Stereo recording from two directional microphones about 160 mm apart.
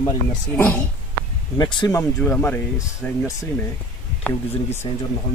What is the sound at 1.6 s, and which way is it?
Speech, 25° left (ahead or behind).